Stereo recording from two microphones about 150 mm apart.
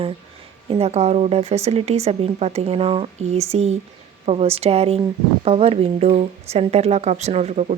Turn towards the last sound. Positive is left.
turn(degrees=-45)  # may be behind; listen again after turning